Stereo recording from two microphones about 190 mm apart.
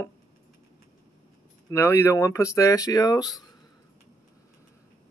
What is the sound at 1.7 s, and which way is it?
Speech, 15° left (ahead or behind).